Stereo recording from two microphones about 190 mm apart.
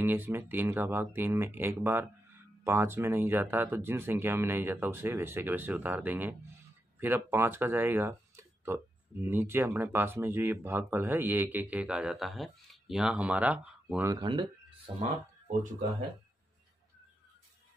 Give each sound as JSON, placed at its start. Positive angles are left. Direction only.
{"t": 0.0, "sound": "speech", "side_deg": -10}
{"t": 14.1, "sound": "speech", "side_deg": -25}